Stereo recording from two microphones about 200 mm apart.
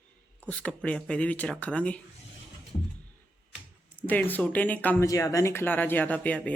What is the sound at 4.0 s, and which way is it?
A man's voice, 10° left (ahead or behind).